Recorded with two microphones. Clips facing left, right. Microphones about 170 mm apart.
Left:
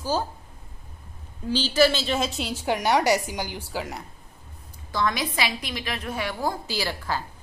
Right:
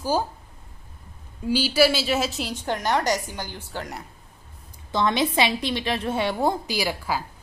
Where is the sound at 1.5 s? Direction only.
10° right (ahead or behind).